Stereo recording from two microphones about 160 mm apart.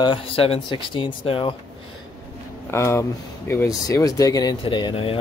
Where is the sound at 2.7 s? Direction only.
15° left (ahead or behind).